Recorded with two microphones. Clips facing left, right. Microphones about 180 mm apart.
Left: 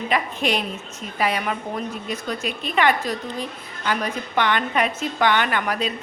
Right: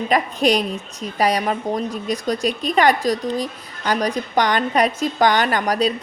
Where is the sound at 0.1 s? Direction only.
40° right (ahead or behind).